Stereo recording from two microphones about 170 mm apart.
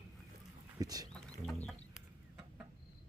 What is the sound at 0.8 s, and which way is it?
Speech, 20° right (ahead or behind).